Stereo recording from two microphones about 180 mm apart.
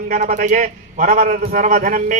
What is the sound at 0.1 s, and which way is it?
A man's voice, 45° right (ahead or behind).